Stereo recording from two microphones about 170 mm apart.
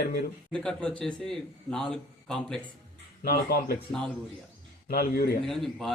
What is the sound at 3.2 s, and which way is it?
Speech, 65° left (ahead or behind).